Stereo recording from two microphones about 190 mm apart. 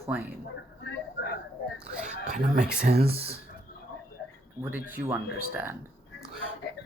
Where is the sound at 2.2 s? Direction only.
45° right (ahead or behind).